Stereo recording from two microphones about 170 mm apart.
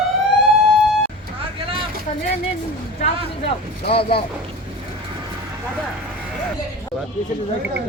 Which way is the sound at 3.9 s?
35° left (ahead or behind).